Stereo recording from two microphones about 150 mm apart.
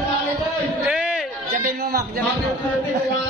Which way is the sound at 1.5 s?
75° right (ahead or behind).